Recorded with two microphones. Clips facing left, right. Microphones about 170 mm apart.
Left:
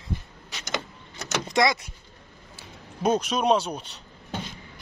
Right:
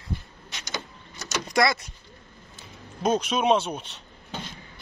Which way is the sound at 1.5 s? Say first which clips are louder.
Even; 20° left (ahead or behind).